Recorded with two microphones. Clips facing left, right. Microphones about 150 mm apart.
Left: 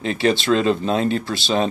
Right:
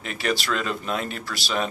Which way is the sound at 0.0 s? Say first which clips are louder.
Left 8 dB; 30° left (ahead or behind).